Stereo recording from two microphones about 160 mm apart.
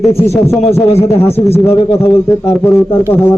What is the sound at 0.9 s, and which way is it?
A man's voice, 15° left (ahead or behind).